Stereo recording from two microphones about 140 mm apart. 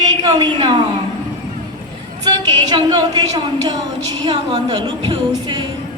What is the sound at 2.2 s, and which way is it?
A woman's voice, 30° right (ahead or behind).